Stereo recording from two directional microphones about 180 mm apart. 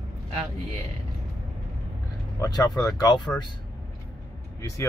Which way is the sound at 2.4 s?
20° left (ahead or behind).